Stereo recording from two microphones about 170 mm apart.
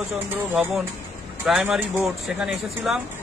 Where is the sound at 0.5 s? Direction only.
10° right (ahead or behind).